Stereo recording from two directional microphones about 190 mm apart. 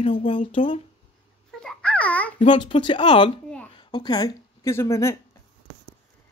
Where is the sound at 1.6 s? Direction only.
5° left (ahead or behind).